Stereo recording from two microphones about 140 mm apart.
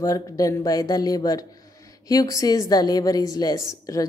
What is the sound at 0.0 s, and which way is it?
A woman's voice, 25° left (ahead or behind).